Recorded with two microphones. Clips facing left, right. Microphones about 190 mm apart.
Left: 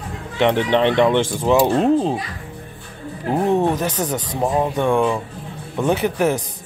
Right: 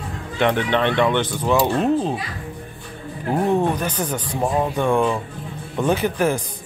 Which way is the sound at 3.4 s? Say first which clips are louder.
Left 2 dB; 20° left (ahead or behind).